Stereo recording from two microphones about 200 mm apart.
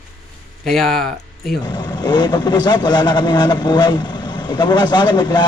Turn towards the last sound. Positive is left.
turn(degrees=20)  # may be behind; listen again after turning